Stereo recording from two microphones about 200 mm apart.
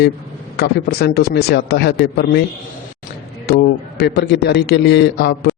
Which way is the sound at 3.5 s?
55° left (ahead or behind).